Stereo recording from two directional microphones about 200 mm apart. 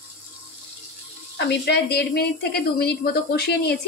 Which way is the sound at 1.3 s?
55° left (ahead or behind).